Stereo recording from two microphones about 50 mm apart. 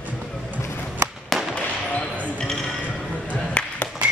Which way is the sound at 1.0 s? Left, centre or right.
Right.